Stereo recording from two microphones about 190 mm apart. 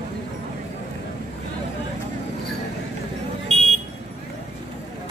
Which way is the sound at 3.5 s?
30° right (ahead or behind).